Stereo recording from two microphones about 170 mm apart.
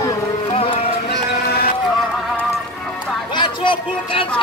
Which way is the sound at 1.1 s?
65° left (ahead or behind).